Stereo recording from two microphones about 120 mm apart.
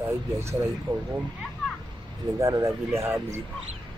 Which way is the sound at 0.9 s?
35° right (ahead or behind).